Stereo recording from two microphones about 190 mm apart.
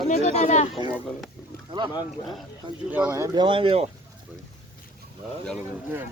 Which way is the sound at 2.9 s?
10° right (ahead or behind).